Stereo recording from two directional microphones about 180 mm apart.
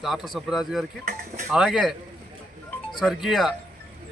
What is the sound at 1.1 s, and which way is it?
Speech, 45° right (ahead or behind).